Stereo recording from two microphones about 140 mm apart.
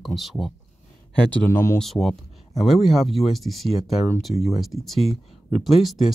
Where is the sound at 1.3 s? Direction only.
15° left (ahead or behind).